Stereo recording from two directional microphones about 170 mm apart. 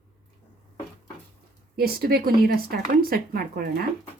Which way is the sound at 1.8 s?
60° right (ahead or behind).